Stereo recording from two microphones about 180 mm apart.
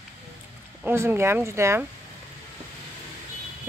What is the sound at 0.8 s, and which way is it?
Speech, 15° right (ahead or behind).